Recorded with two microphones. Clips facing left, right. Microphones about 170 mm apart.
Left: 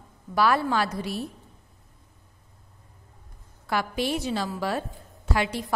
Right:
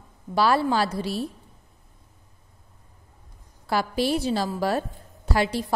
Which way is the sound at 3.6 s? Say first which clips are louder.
Right 3 dB; 35° right (ahead or behind).